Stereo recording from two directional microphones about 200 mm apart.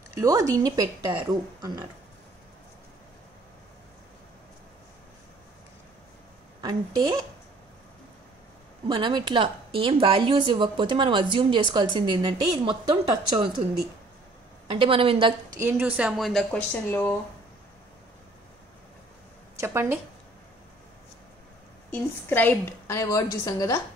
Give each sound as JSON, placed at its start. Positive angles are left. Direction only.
{"t": 0.1, "sound": "speech", "side_deg": -15}
{"t": 8.8, "sound": "a woman's voice", "side_deg": -25}
{"t": 14.7, "sound": "a woman's voice", "side_deg": -25}
{"t": 15.6, "sound": "speech", "side_deg": -5}
{"t": 19.6, "sound": "speech", "side_deg": -10}
{"t": 21.9, "sound": "a woman's voice", "side_deg": 10}